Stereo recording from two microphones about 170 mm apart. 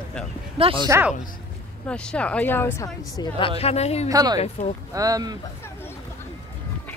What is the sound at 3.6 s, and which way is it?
Speech, 40° left (ahead or behind).